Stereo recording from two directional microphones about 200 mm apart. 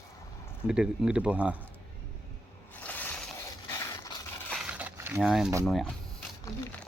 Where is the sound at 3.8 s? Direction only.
15° left (ahead or behind).